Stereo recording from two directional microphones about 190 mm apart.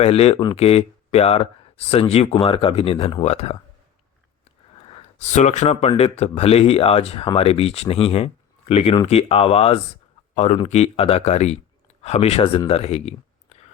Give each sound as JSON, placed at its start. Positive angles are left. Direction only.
{"t": 0.0, "sound": "speech", "side_deg": 30}
{"t": 5.2, "sound": "speech", "side_deg": 40}